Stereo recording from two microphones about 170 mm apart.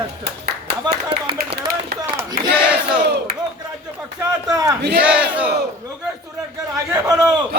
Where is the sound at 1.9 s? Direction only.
75° right (ahead or behind).